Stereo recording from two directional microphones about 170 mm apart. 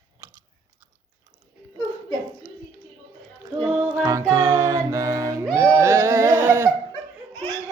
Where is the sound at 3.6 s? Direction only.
Centre (ahead or behind).